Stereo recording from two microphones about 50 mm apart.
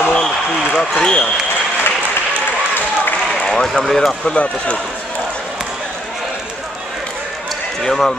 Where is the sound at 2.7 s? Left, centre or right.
Left.